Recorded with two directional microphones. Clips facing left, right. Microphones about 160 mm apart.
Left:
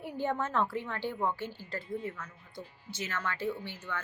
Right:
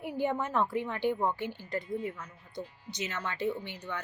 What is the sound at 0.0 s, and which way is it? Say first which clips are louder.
A woman's voice: right 2 dB; 15° right (ahead or behind).